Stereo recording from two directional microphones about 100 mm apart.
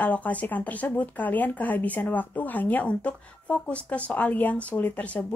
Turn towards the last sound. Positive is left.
turn(degrees=15)  # may be behind; listen again after turning